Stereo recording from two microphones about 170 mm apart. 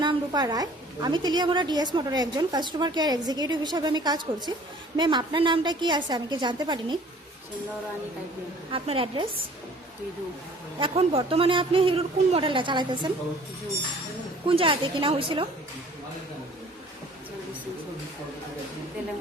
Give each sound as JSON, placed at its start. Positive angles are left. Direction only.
{"t": 0.0, "sound": "a woman's voice", "side_deg": -25}
{"t": 8.7, "sound": "a woman's voice", "side_deg": -30}
{"t": 10.8, "sound": "a woman's voice", "side_deg": -30}
{"t": 14.4, "sound": "a woman's voice", "side_deg": -30}